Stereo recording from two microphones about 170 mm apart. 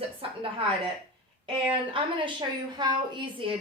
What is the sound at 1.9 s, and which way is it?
A woman's voice, 30° right (ahead or behind).